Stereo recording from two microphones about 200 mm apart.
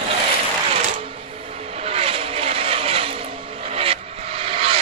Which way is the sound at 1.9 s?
30° right (ahead or behind).